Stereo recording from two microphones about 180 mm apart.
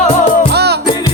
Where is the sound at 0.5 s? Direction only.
65° right (ahead or behind).